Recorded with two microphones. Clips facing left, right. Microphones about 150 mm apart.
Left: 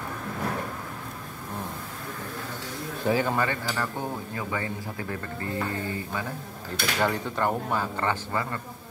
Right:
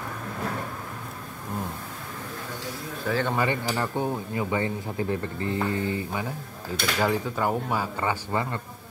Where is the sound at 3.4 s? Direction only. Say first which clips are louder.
Right 2 dB; 20° right (ahead or behind).